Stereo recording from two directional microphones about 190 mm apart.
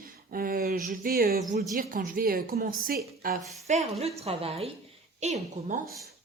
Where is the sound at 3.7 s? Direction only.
35° right (ahead or behind).